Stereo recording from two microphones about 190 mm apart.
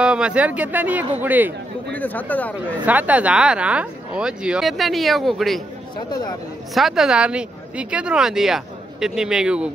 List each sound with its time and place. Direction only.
0.0 s speech: 5° right (ahead or behind)
1.9 s speech: 10° left (ahead or behind)
2.8 s speech: 10° right (ahead or behind)
6.0 s speech: 20° left (ahead or behind)
6.7 s speech: centre (ahead or behind)